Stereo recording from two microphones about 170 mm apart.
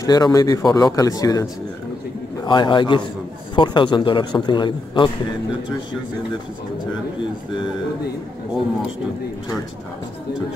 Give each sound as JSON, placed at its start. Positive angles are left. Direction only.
{"t": 0.0, "sound": "a man's voice", "side_deg": 20}